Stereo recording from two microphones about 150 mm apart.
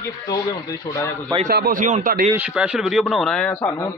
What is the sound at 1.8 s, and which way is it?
Speech, 55° right (ahead or behind).